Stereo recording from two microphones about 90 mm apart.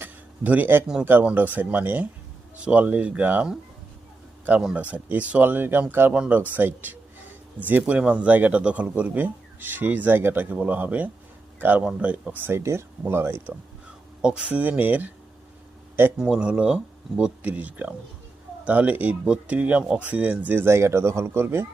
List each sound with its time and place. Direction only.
0.0 s a sound: 20° right (ahead or behind)
1.0 s a man's voice: 20° right (ahead or behind)
4.6 s a man's voice: 15° right (ahead or behind)
14.2 s a man's voice: 10° right (ahead or behind)
16.1 s a man's voice: 10° right (ahead or behind); by 21.7 s 25° right (ahead or behind)